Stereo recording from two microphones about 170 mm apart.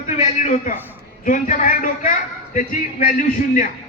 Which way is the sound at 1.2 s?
50° left (ahead or behind).